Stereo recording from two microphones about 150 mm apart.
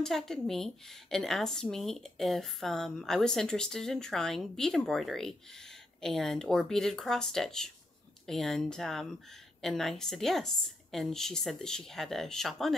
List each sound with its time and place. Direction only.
0.0 s speech: 5° left (ahead or behind)